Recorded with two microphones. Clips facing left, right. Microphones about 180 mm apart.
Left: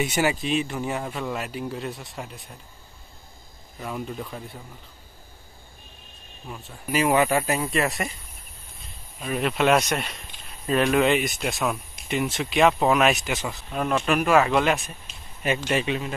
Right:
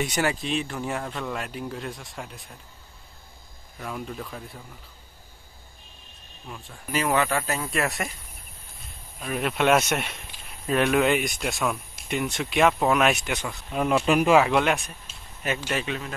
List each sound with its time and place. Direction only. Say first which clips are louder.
0.0 s speech: left 2 dB; 5° left (ahead or behind)
3.8 s speech: left 2 dB; centre (ahead or behind)
6.5 s speech: left 3 dB; 5° left (ahead or behind)
7.7 s speech: left 2 dB; centre (ahead or behind)
9.2 s speech: left 1 dB; centre (ahead or behind); by 14.4 s 20° right (ahead or behind)
14.4 s speech: left 1 dB; centre (ahead or behind)
15.7 s speech: left 4 dB; 15° left (ahead or behind)